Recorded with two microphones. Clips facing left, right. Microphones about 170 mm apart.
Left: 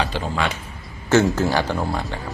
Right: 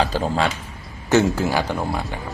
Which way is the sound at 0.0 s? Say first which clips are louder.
Right 3 dB; 40° right (ahead or behind).